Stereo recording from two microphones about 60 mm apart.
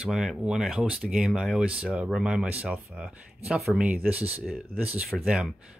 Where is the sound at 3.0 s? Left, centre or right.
Centre.